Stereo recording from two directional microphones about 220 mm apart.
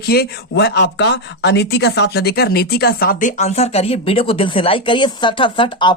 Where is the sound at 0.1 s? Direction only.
45° left (ahead or behind).